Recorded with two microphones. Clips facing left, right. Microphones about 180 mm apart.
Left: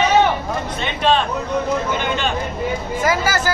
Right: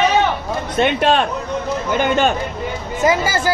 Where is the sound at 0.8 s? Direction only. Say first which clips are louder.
Right 3 dB; 55° right (ahead or behind).